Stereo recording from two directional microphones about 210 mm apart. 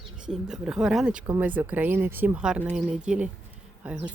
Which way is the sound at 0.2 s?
5° right (ahead or behind).